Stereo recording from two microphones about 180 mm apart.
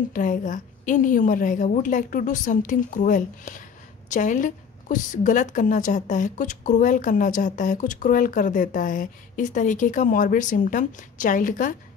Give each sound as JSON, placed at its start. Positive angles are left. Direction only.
{"t": 0.1, "sound": "a woman's voice", "side_deg": 45}